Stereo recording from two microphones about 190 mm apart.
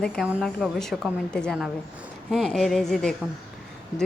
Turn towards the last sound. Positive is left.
turn(degrees=5)  # may be behind; listen again after turning